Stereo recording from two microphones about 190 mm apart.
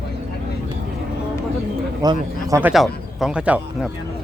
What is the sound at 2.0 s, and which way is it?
Speech, 20° right (ahead or behind).